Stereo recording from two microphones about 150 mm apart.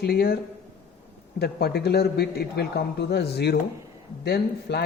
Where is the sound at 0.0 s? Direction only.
90° left.